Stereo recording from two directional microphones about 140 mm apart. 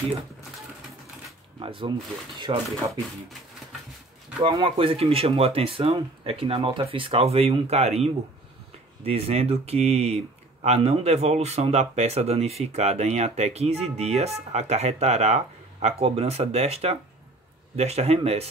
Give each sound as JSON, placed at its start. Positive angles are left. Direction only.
{"t": 1.6, "sound": "speech", "side_deg": -40}
{"t": 4.4, "sound": "speech", "side_deg": -35}